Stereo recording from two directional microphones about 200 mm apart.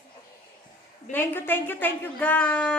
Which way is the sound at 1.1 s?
10° left (ahead or behind).